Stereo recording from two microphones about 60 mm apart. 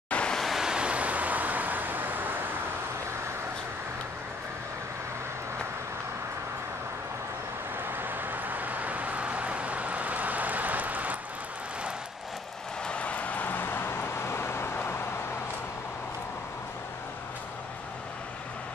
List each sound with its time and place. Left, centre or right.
0.1 s waves: centre
0.4 s waves: centre; by 2.3 s right
8.0 s vehicle: right
12.8 s vehicle: left